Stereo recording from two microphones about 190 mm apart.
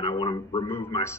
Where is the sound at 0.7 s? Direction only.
15° left (ahead or behind).